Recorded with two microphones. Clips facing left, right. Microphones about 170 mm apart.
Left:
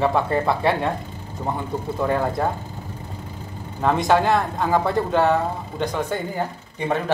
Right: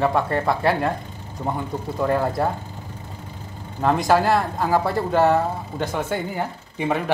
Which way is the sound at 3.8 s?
Centre (ahead or behind).